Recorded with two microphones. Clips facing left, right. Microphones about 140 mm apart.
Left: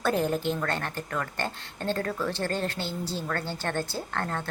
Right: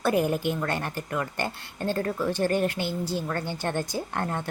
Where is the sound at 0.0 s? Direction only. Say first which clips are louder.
Right 2 dB; 10° right (ahead or behind).